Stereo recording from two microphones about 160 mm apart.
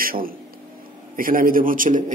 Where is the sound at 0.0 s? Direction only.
65° right (ahead or behind).